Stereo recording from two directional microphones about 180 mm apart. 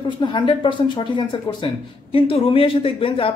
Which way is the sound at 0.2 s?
25° left (ahead or behind).